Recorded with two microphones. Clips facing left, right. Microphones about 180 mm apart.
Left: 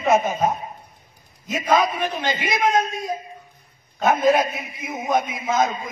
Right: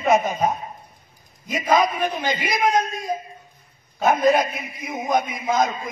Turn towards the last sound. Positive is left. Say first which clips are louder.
# even
turn(degrees=0)  # may be behind; listen again after turning